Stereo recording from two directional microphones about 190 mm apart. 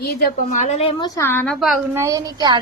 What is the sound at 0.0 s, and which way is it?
A woman's voice, 50° left (ahead or behind).